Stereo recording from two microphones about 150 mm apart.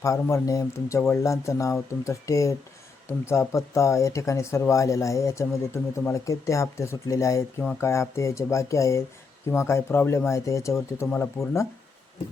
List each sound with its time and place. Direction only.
0.0 s speech: 20° left (ahead or behind)